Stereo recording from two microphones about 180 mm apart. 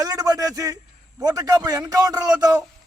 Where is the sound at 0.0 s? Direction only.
20° right (ahead or behind).